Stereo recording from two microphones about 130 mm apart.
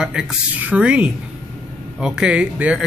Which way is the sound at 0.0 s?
5° right (ahead or behind).